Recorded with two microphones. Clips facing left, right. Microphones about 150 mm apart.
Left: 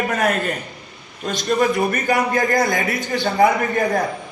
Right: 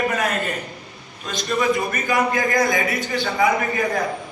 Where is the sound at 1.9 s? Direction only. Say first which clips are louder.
Left 2 dB; 55° left (ahead or behind).